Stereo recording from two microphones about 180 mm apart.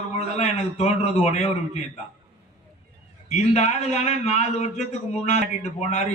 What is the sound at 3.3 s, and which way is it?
A man's voice, 40° left (ahead or behind).